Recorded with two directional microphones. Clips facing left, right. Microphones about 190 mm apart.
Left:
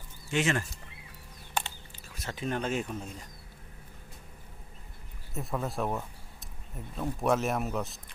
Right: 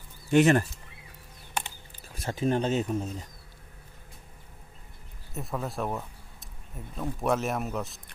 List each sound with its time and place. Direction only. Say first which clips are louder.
0.3 s speech: right 9 dB; 55° right (ahead or behind)
2.0 s speech: right 7 dB; 30° right (ahead or behind)
5.3 s speech: even; centre (ahead or behind)